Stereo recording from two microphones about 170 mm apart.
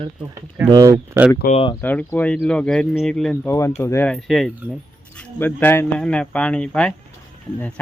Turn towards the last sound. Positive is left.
turn(degrees=5)  # may be behind; listen again after turning